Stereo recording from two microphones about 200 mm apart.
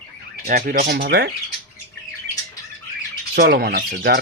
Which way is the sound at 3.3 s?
50° right (ahead or behind).